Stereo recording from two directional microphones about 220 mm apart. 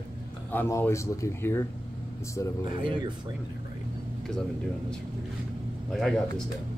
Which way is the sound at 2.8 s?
20° right (ahead or behind).